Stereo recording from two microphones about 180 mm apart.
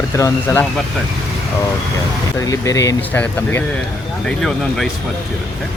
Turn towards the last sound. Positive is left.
turn(degrees=0)  # may be behind; listen again after turning